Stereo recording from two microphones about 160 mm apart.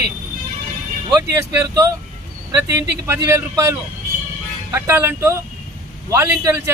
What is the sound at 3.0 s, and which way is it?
A man's voice, 15° right (ahead or behind).